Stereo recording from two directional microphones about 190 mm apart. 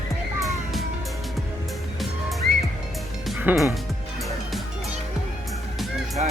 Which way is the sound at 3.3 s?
5° right (ahead or behind).